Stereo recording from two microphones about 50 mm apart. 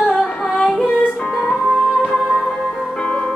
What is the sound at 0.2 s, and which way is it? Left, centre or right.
Music, centre.